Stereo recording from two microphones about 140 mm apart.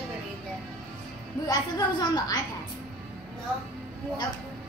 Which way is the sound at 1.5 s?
30° left (ahead or behind).